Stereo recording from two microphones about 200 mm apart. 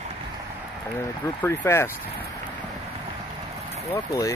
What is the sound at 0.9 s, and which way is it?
Speech, 15° left (ahead or behind).